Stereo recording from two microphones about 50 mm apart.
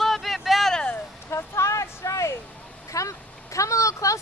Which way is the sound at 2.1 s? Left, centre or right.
Left.